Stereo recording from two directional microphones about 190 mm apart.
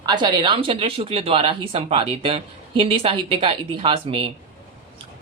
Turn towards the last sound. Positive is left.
turn(degrees=-25)  # may be behind; listen again after turning